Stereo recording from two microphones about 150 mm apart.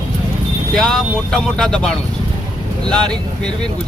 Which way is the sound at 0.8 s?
5° left (ahead or behind).